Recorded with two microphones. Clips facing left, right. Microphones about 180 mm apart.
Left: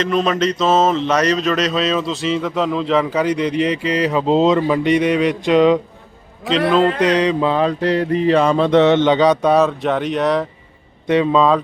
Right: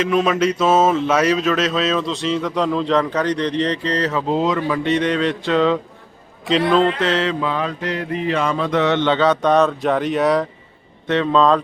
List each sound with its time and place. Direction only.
0.0 s mantra: 5° right (ahead or behind); by 5.8 s 15° left (ahead or behind)
6.7 s mantra: 5° left (ahead or behind)
7.0 s mantra: 15° left (ahead or behind)
7.4 s mantra: 30° left (ahead or behind); by 10.4 s centre (ahead or behind)
11.0 s mantra: 10° left (ahead or behind)